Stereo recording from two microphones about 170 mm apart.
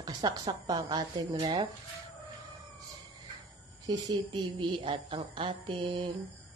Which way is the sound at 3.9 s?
25° right (ahead or behind).